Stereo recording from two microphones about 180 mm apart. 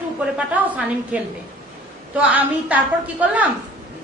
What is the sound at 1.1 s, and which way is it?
A woman's voice, 5° right (ahead or behind).